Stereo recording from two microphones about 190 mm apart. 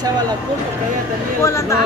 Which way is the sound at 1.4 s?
15° left (ahead or behind).